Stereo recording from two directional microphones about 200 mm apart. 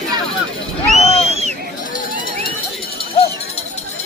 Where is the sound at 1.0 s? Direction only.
30° left (ahead or behind).